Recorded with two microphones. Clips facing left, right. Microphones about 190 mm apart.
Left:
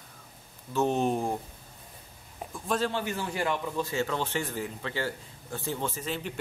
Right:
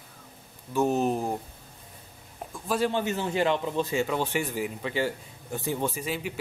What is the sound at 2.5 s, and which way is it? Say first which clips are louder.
Speech: right 1 dB; 5° right (ahead or behind).